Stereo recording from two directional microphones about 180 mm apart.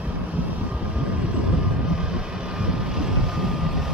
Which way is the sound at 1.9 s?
5° right (ahead or behind).